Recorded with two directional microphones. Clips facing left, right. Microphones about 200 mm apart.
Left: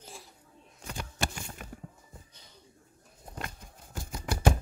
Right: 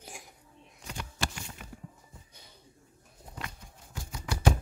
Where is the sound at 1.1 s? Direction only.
50° left (ahead or behind).